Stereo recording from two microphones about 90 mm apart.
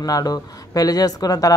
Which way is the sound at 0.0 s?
45° left (ahead or behind).